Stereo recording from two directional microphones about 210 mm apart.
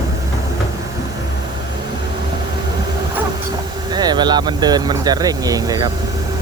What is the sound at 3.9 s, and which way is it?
Speech, 20° right (ahead or behind).